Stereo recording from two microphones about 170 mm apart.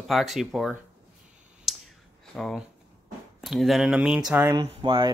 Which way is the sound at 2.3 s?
5° left (ahead or behind).